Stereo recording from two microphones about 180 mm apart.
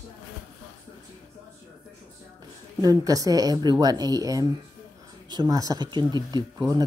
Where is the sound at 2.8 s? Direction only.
20° right (ahead or behind).